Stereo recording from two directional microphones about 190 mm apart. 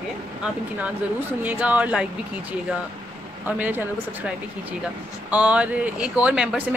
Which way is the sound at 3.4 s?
10° right (ahead or behind).